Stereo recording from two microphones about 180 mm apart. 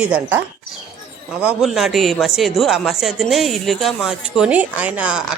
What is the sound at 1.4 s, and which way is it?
A man's voice, 5° right (ahead or behind).